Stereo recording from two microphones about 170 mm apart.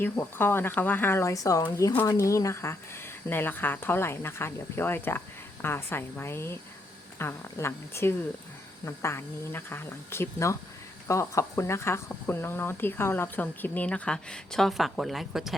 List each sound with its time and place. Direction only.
0.0 s speech: 10° left (ahead or behind)